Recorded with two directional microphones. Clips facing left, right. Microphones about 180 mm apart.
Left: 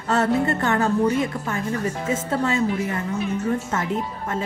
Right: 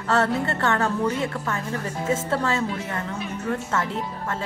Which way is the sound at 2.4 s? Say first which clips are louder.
Left 4 dB; 15° left (ahead or behind).